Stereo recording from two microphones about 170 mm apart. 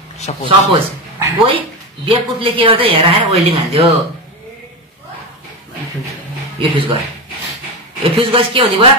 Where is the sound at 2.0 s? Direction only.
30° right (ahead or behind).